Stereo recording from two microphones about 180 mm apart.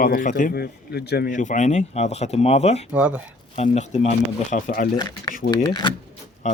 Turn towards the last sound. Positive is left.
turn(degrees=40)  # may be behind; listen again after turning